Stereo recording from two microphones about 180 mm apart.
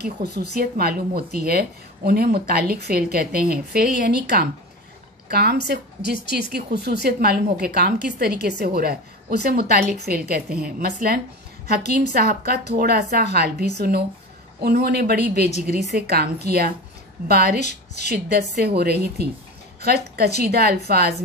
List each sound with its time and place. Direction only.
0.0 s a woman's voice: 65° right (ahead or behind)
0.6 s a woman's voice: 55° right (ahead or behind)
17.6 s a woman's voice: 40° left (ahead or behind)
18.0 s a woman's voice: 65° right (ahead or behind)